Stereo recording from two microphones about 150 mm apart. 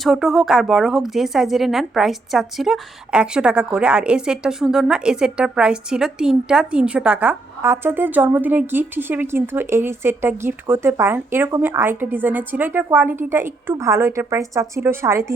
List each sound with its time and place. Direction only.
0.0 s speech: centre (ahead or behind); by 15.4 s 20° right (ahead or behind)